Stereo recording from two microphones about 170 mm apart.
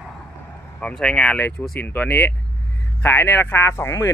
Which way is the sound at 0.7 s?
5° left (ahead or behind).